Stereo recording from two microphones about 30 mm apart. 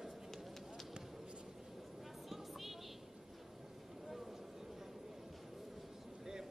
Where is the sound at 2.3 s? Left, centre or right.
Centre.